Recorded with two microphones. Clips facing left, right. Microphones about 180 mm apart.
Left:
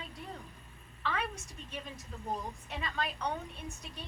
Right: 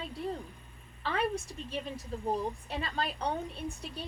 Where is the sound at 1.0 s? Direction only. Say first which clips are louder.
Right 5 dB; 30° right (ahead or behind).